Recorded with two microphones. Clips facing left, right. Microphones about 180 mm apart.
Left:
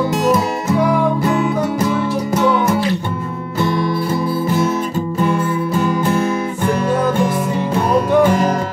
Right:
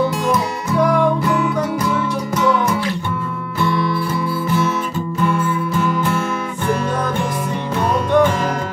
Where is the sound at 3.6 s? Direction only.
40° left (ahead or behind).